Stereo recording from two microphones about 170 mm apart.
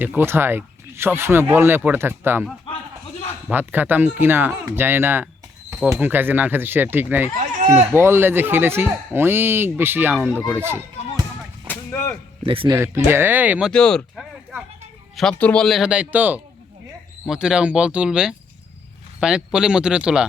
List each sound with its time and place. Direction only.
0.0 s speech: 10° right (ahead or behind)
3.5 s speech: 10° right (ahead or behind)
7.3 s a sound: 45° right (ahead or behind)
7.9 s speech: 15° right (ahead or behind)
10.6 s a sound: 15° right (ahead or behind)
11.7 s whip: 15° left (ahead or behind)
12.5 s speech: 30° right (ahead or behind)
12.7 s speech: 15° right (ahead or behind)
13.7 s speech: 5° left (ahead or behind)